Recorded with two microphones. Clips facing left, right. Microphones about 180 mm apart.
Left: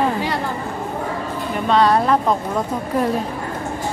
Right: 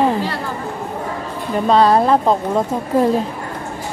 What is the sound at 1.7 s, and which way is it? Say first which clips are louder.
Speech: right 3 dB; 35° right (ahead or behind).